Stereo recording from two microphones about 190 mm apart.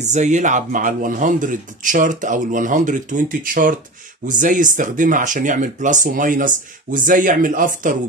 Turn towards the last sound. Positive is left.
turn(degrees=-45)  # may be behind; listen again after turning